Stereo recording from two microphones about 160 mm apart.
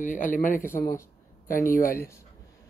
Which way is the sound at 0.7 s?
15° left (ahead or behind).